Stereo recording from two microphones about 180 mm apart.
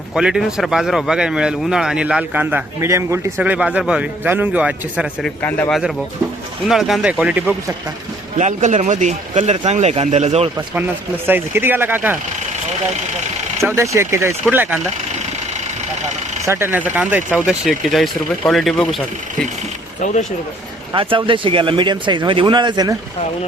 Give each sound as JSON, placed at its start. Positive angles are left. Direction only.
{"t": 0.1, "sound": "speech", "side_deg": -5}
{"t": 5.4, "sound": "speech", "side_deg": 10}
{"t": 6.7, "sound": "speech", "side_deg": 0}
{"t": 8.4, "sound": "speech", "side_deg": -40}
{"t": 11.3, "sound": "speech", "side_deg": -10}
{"t": 13.6, "sound": "speech", "side_deg": -15}
{"t": 16.5, "sound": "speech", "side_deg": -15}
{"t": 20.9, "sound": "speech", "side_deg": -30}